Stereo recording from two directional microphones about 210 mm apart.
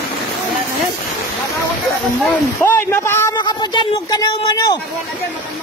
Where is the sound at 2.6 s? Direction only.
10° left (ahead or behind).